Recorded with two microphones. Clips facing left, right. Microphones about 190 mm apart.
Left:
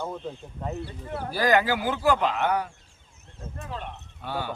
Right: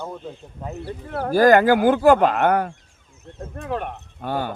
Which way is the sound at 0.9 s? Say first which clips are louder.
Right 9 dB; 60° right (ahead or behind).